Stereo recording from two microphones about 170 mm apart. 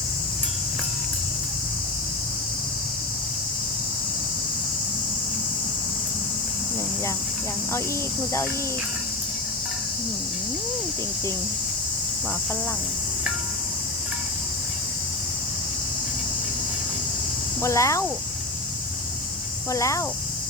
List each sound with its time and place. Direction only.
17.6 s speech: 15° left (ahead or behind)
19.7 s speech: 20° left (ahead or behind)